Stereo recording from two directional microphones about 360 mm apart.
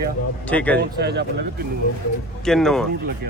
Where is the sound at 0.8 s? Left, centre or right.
Right.